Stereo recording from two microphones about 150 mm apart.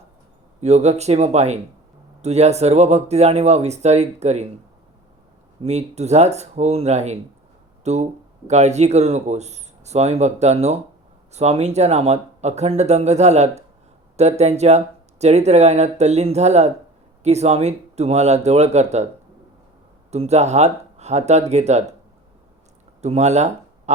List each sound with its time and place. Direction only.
0.6 s speech: 45° right (ahead or behind)
5.6 s speech: 45° right (ahead or behind)
20.1 s speech: 45° right (ahead or behind)
23.0 s a sound: 45° right (ahead or behind)